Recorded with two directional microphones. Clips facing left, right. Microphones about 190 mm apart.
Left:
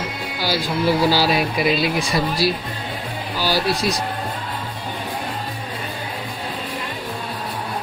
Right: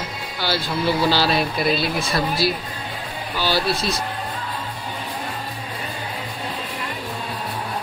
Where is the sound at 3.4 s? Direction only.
10° left (ahead or behind).